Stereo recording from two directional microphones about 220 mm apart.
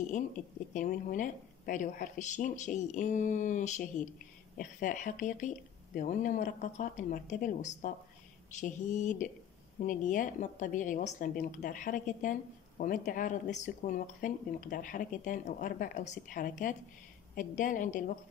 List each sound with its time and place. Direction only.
0.7 s a woman's voice: 35° left (ahead or behind)